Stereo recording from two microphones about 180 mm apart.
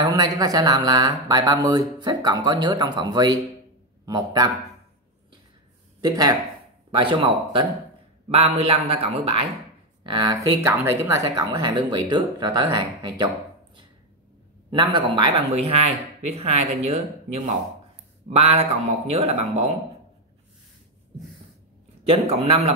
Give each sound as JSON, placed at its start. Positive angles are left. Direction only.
{"t": 0.0, "sound": "speech", "side_deg": -20}
{"t": 5.9, "sound": "speech", "side_deg": -20}
{"t": 14.7, "sound": "speech", "side_deg": -25}
{"t": 22.0, "sound": "speech", "side_deg": -30}